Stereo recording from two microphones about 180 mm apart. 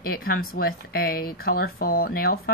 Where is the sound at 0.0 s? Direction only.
55° left (ahead or behind).